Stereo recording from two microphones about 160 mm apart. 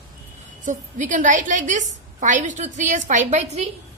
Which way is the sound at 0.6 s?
50° right (ahead or behind).